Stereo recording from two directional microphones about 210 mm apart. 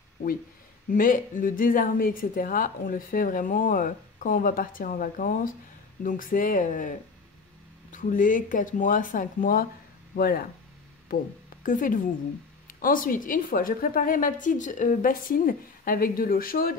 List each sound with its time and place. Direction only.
0.9 s a woman's voice: 40° left (ahead or behind)